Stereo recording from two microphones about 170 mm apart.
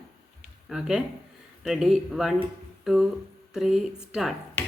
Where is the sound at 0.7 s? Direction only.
5° right (ahead or behind).